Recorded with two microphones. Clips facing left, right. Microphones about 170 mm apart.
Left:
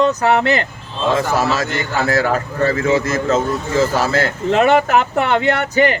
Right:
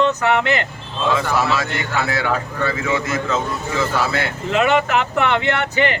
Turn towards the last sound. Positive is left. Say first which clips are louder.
# left 4 dB
turn(degrees=40)  # may be behind; listen again after turning